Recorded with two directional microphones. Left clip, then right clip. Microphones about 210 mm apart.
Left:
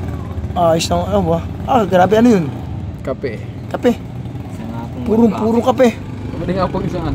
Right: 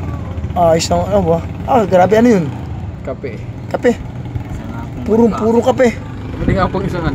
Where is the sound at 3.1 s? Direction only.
50° left (ahead or behind).